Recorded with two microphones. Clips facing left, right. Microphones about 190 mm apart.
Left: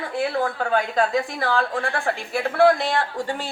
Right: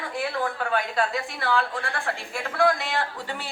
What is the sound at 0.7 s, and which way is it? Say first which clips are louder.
A woman's voice: left 6 dB; 40° left (ahead or behind).